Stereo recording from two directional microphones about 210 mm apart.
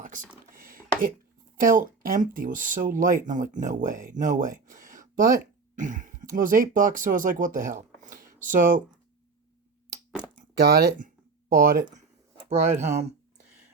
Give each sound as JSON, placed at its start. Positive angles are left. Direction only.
{"t": 0.0, "sound": "computer keyboard", "side_deg": -35}
{"t": 0.5, "sound": "a sound", "side_deg": -40}
{"t": 1.6, "sound": "speech", "side_deg": -40}
{"t": 10.6, "sound": "speech", "side_deg": -45}